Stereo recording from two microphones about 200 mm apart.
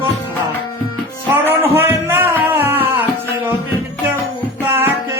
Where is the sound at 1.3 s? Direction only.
10° right (ahead or behind).